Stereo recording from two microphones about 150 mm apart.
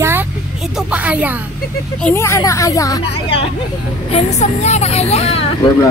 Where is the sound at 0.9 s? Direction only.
10° right (ahead or behind).